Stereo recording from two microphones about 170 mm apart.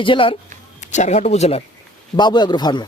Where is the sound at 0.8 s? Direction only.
45° left (ahead or behind).